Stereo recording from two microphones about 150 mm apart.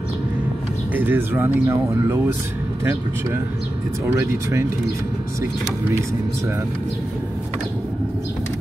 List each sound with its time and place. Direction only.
0.9 s speech: 15° right (ahead or behind)